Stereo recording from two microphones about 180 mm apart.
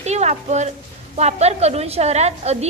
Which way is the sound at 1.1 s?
35° right (ahead or behind).